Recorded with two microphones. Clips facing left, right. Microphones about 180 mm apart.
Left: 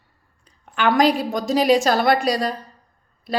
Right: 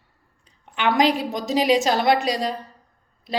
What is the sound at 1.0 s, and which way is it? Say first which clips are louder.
A woman's voice: left 1 dB; 45° left (ahead or behind).